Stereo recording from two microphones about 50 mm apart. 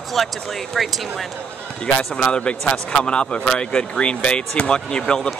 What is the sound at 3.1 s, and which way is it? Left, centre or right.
Speech, centre.